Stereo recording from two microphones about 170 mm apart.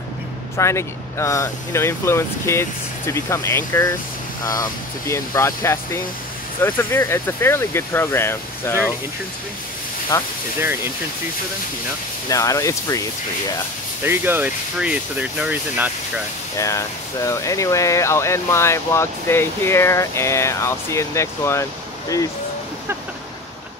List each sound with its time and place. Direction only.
0.6 s speech: 15° left (ahead or behind)
10.1 s speech: 20° left (ahead or behind)
12.3 s speech: 20° left (ahead or behind)
14.0 s speech: 10° right (ahead or behind)
16.5 s speech: 20° left (ahead or behind)